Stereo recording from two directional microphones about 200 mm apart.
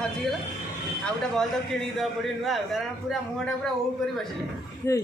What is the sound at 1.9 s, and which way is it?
A man's voice, centre (ahead or behind).